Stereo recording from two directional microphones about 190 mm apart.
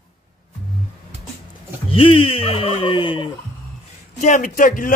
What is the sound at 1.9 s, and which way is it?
Fowl, 30° left (ahead or behind).